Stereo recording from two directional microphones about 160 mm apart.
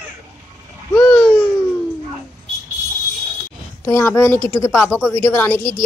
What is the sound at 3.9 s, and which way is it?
Speech, 15° left (ahead or behind).